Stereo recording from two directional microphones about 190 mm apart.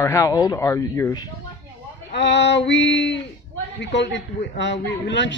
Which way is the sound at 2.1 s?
65° left (ahead or behind).